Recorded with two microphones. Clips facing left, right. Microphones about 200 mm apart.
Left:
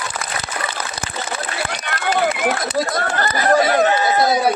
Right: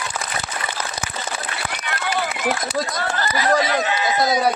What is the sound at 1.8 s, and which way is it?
Run, 60° left (ahead or behind).